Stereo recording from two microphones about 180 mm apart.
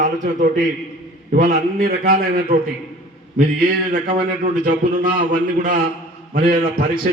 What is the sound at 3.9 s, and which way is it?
A man's voice, 50° right (ahead or behind).